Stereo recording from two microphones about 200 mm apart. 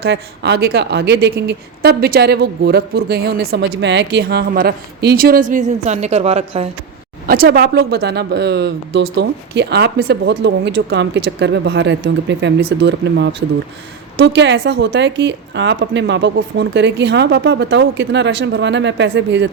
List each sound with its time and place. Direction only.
0.0 s a woman's voice: 55° right (ahead or behind); by 6.7 s 30° right (ahead or behind)
7.3 s speech: 50° right (ahead or behind); by 19.5 s 65° right (ahead or behind)